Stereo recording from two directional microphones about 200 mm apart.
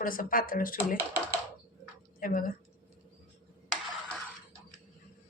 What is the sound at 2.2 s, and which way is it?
Speech, 45° left (ahead or behind).